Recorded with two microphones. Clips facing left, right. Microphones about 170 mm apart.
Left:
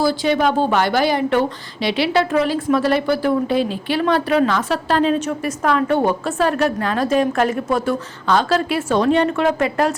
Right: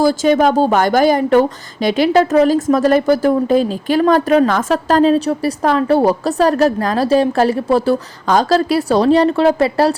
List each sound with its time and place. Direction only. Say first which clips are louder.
0.0 s a woman's voice: right 5 dB; 45° right (ahead or behind)